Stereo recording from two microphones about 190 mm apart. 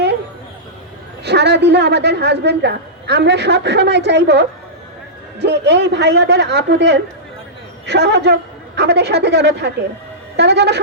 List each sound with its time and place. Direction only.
1.2 s a woman's voice: 60° right (ahead or behind)